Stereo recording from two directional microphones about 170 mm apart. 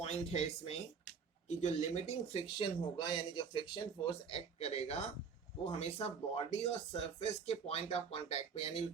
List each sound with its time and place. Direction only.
0.0 s speech: 40° left (ahead or behind)